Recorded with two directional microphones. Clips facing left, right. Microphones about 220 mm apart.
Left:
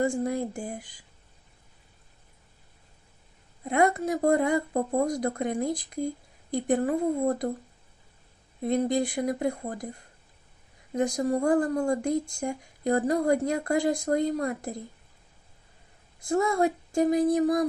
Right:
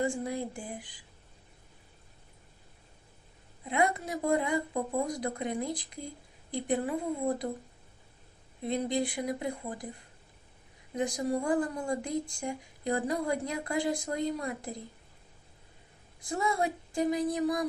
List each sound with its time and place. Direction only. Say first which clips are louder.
0.0 s speech: left 5 dB; 45° left (ahead or behind)
3.6 s speech: left 5 dB; 45° left (ahead or behind)
8.6 s speech: left 5 dB; 45° left (ahead or behind)
10.9 s speech: left 5 dB; 45° left (ahead or behind)
16.3 s speech: left 7 dB; 45° left (ahead or behind)